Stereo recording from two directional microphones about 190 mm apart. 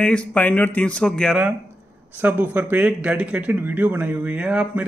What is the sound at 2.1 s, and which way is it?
Speech, 10° right (ahead or behind).